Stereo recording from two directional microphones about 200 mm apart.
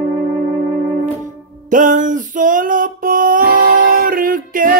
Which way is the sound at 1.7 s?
40° right (ahead or behind).